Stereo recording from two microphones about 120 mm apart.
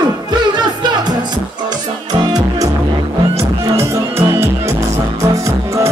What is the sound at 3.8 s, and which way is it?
Music, 25° right (ahead or behind).